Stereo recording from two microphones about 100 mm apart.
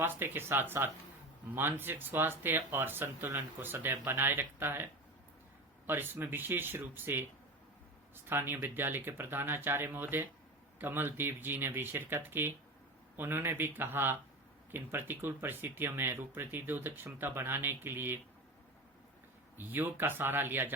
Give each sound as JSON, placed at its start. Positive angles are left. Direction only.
{"t": 0.0, "sound": "speech", "side_deg": -20}
{"t": 19.5, "sound": "speech", "side_deg": -20}